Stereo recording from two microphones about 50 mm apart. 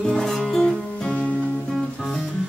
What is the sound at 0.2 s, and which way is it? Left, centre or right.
Music, centre.